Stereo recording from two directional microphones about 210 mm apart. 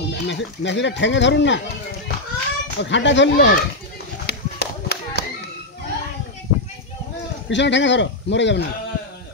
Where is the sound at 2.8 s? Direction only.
60° left (ahead or behind).